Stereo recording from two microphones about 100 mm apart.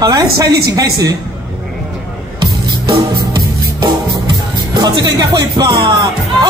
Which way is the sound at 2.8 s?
45° right (ahead or behind).